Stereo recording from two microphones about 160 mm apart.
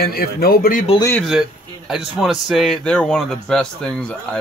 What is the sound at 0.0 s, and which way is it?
Speech, 75° left (ahead or behind).